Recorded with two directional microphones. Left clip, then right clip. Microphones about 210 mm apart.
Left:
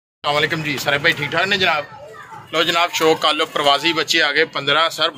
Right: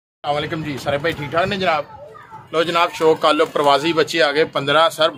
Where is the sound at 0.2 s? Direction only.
50° right (ahead or behind).